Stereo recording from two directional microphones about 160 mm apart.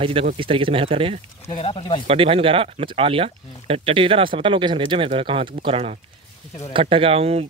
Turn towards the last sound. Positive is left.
turn(degrees=-40)  # may be behind; listen again after turning